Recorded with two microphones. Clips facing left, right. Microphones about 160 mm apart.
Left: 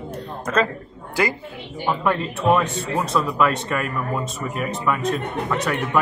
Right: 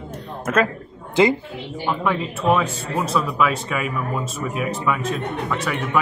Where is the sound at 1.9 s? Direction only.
Centre (ahead or behind).